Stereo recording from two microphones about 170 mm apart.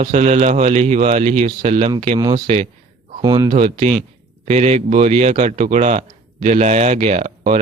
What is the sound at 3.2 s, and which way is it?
Speech, 25° right (ahead or behind).